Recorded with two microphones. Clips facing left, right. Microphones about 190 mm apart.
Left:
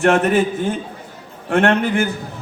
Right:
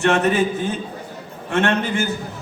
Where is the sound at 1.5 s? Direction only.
55° left (ahead or behind).